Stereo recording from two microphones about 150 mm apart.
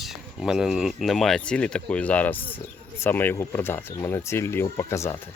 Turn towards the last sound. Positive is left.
turn(degrees=20)  # may be behind; listen again after turning